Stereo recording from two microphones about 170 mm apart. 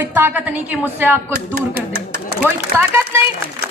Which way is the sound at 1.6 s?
70° right (ahead or behind).